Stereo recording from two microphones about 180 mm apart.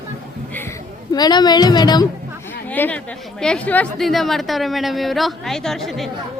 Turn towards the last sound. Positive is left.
turn(degrees=0)  # may be behind; listen again after turning